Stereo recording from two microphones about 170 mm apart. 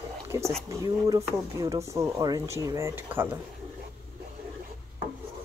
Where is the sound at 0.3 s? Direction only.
20° right (ahead or behind).